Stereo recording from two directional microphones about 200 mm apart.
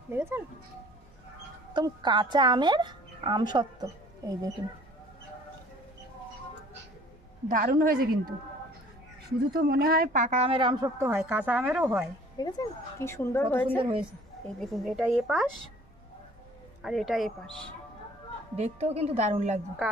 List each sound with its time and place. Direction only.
0.1 s a woman's voice: 10° right (ahead or behind)
1.7 s a woman's voice: 20° right (ahead or behind)
7.4 s a woman's voice: 45° right (ahead or behind)
9.5 s speech: 50° right (ahead or behind); by 10.9 s 20° right (ahead or behind)
11.0 s a woman's voice: 10° right (ahead or behind)
12.4 s a woman's voice: 20° left (ahead or behind)
13.7 s a woman's voice: 25° right (ahead or behind)
14.6 s speech: centre (ahead or behind)
16.8 s speech: centre (ahead or behind)
18.6 s speech: 30° right (ahead or behind)